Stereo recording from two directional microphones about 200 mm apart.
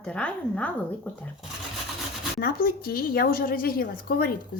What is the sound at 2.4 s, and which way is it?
A woman's voice, 50° left (ahead or behind).